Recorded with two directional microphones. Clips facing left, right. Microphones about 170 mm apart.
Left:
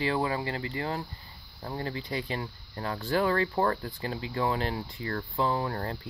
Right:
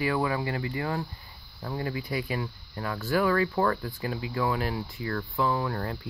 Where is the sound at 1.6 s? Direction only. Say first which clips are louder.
Right 2 dB; 30° left (ahead or behind).